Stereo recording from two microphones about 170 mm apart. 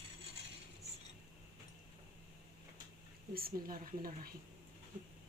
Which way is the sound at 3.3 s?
60° right (ahead or behind).